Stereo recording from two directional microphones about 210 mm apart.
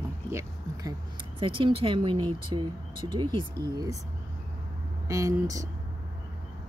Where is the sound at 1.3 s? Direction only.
25° right (ahead or behind).